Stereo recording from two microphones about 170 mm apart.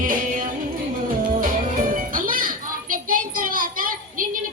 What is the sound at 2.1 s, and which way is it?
Children playing, 55° right (ahead or behind).